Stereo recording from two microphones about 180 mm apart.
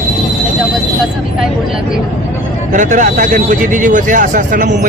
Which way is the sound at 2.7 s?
45° right (ahead or behind).